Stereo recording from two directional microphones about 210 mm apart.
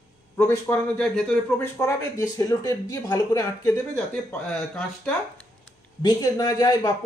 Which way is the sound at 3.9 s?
5° left (ahead or behind).